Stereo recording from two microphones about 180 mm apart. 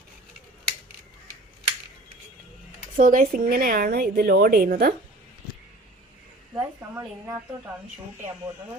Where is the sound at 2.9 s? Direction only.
50° right (ahead or behind).